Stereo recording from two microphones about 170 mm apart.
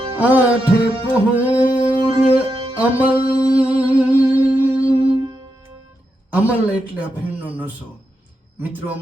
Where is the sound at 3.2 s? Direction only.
5° right (ahead or behind).